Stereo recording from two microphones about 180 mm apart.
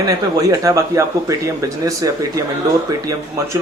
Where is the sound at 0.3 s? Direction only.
15° right (ahead or behind).